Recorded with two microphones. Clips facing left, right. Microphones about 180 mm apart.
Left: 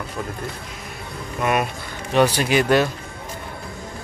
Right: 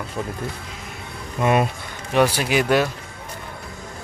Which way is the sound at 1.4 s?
25° right (ahead or behind).